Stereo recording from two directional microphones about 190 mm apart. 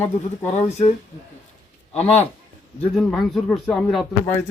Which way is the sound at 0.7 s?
35° left (ahead or behind).